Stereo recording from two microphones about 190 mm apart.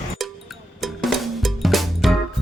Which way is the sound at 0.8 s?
Centre (ahead or behind).